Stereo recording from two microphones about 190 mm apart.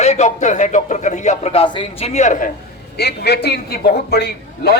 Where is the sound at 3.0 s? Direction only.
60° left (ahead or behind).